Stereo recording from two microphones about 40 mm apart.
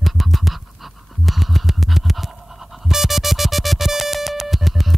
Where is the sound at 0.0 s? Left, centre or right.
Centre.